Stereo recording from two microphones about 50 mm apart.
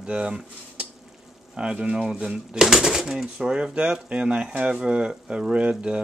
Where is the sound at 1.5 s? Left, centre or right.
Right.